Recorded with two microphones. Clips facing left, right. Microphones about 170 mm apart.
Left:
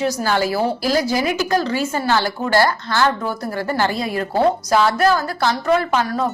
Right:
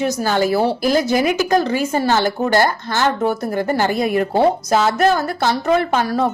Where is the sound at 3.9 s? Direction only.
50° right (ahead or behind).